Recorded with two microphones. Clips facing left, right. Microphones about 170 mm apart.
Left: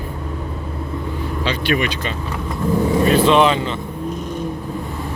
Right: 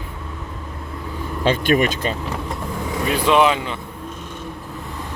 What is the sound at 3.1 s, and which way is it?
Speech, 10° right (ahead or behind).